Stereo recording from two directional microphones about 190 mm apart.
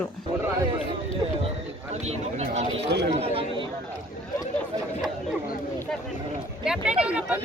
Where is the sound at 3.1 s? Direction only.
30° right (ahead or behind).